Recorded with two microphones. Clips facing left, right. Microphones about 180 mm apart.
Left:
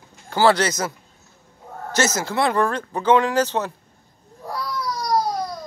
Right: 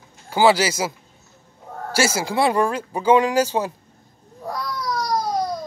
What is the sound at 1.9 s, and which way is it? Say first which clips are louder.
Speech: right 1 dB; 10° right (ahead or behind).